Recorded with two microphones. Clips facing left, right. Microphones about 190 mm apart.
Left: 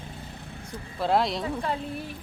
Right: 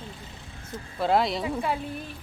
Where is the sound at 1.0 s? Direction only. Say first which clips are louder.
Right 1 dB; centre (ahead or behind).